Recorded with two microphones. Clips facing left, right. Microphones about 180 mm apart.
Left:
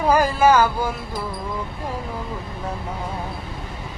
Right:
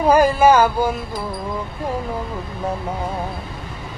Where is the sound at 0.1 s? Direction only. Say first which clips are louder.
Right 3 dB; 20° right (ahead or behind).